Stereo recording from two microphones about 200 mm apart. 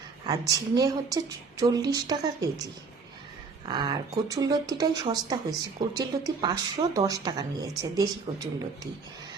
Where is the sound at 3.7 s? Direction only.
20° right (ahead or behind).